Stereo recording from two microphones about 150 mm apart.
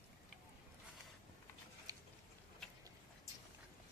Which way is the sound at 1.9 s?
25° right (ahead or behind).